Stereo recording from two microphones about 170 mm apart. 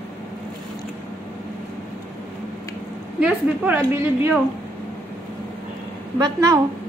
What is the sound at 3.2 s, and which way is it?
A woman's voice, 10° right (ahead or behind).